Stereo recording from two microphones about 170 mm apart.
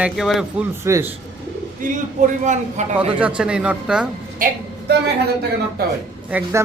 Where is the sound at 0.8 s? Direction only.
15° right (ahead or behind).